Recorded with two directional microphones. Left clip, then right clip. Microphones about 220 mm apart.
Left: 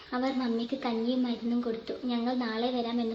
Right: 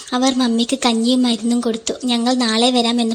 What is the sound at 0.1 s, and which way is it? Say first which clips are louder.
A woman's voice: right 13 dB; 40° right (ahead or behind).